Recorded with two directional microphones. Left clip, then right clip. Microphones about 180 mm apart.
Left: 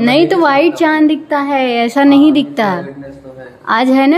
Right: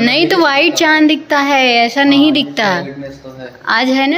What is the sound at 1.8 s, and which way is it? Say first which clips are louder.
A woman's voice: left 1 dB; 25° left (ahead or behind).